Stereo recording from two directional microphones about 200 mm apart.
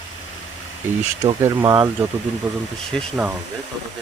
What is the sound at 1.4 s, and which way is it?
Speech, 20° right (ahead or behind).